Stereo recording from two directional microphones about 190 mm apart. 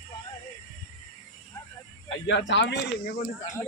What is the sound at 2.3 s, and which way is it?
Speech, 70° left (ahead or behind).